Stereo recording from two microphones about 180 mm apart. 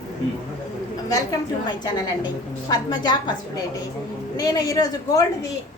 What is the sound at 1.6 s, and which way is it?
A man's voice, 20° left (ahead or behind).